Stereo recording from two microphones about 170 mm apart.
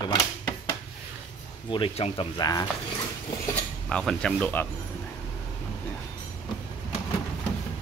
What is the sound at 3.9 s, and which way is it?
Speech, 5° left (ahead or behind).